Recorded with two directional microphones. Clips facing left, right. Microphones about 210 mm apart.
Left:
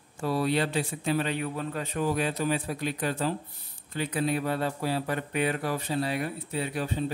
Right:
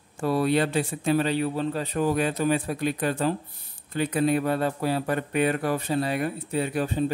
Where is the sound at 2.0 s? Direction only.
50° right (ahead or behind).